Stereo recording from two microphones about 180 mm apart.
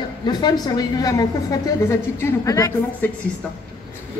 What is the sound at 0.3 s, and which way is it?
A woman's voice, 20° left (ahead or behind).